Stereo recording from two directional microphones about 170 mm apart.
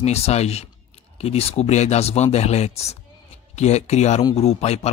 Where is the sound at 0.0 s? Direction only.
40° left (ahead or behind).